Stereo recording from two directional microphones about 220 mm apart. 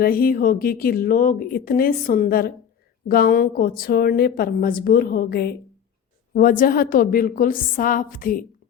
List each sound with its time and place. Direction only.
0.0 s speech: 40° left (ahead or behind)